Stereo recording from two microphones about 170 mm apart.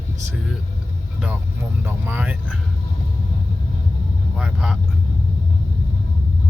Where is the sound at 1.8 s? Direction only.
10° right (ahead or behind).